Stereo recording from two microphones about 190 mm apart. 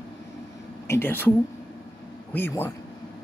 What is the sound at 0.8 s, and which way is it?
Speech, 10° left (ahead or behind).